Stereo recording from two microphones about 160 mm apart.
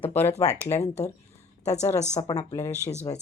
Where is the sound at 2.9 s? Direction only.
45° left (ahead or behind).